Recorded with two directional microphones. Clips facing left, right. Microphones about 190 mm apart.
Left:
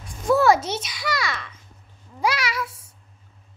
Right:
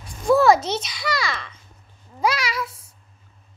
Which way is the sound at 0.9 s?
25° right (ahead or behind).